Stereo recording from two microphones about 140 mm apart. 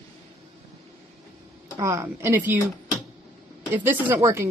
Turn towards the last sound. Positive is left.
turn(degrees=-20)  # may be behind; listen again after turning